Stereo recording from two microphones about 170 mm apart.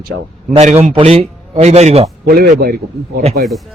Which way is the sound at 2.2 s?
65° right (ahead or behind).